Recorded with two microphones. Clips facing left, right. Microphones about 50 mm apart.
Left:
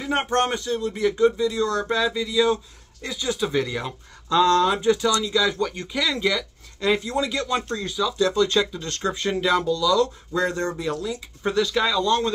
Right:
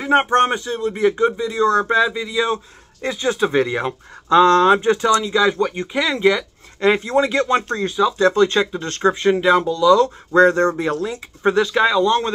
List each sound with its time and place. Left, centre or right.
0.0 s speech: right
10.3 s speech: right